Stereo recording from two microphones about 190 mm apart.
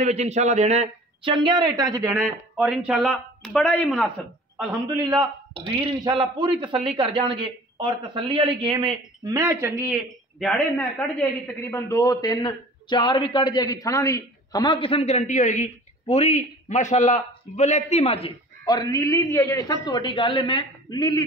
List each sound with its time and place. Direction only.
0.0 s a man's voice: 35° right (ahead or behind); by 2.2 s 15° right (ahead or behind)
2.2 s speech: 5° right (ahead or behind)
4.6 s a man's voice: 20° right (ahead or behind)
10.4 s a man's voice: 5° left (ahead or behind); by 21.2 s 20° left (ahead or behind)